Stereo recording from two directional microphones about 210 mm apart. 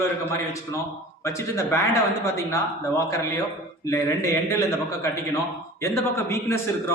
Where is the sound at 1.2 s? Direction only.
15° left (ahead or behind).